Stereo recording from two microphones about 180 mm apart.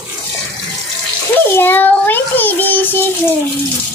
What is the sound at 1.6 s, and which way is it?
Child singing, 10° left (ahead or behind).